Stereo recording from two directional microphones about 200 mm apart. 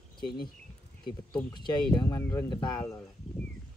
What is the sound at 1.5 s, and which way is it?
Speech, 20° left (ahead or behind).